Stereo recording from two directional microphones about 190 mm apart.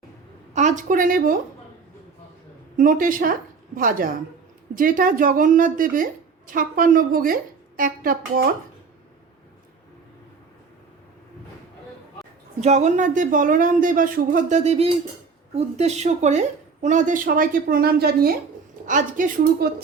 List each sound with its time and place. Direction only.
0.5 s speech: 40° right (ahead or behind)
2.7 s speech: 45° right (ahead or behind)
12.5 s speech: 35° right (ahead or behind); by 18.3 s 55° right (ahead or behind)
18.9 s speech: 45° right (ahead or behind)